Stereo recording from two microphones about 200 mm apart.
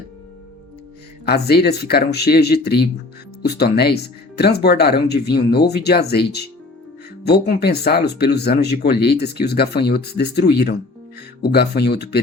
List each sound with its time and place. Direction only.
1.2 s speech: 55° left (ahead or behind)